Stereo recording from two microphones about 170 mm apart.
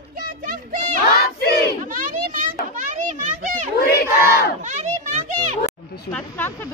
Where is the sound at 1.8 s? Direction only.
50° right (ahead or behind).